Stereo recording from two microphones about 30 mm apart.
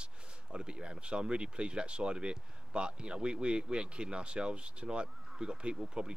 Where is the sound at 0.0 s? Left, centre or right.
Right.